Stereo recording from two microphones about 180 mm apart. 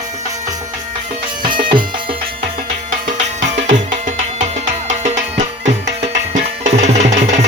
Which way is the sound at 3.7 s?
40° right (ahead or behind).